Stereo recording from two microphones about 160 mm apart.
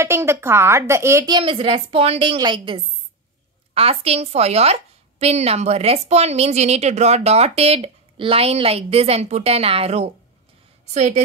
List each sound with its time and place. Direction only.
0.0 s a woman's voice: 15° right (ahead or behind)
1.4 s a woman's voice: 35° right (ahead or behind)